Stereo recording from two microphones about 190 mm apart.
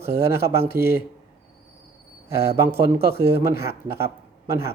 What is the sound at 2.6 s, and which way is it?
Speech, 15° right (ahead or behind).